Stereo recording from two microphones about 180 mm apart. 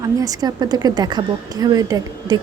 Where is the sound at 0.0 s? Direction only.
20° right (ahead or behind).